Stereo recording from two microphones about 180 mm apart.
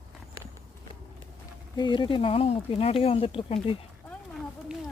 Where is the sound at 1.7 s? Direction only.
25° left (ahead or behind).